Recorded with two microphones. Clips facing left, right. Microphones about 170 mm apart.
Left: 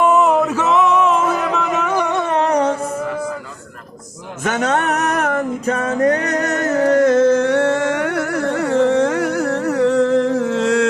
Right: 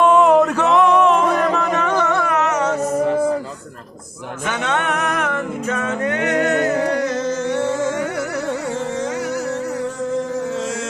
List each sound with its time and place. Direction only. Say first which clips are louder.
0.0 s a sound: right 2 dB; 5° left (ahead or behind)
1.5 s music: even; 5° left (ahead or behind); by 2.7 s 35° left (ahead or behind)
4.4 s music: left 4 dB; 40° left (ahead or behind); by 10.8 s 65° left (ahead or behind)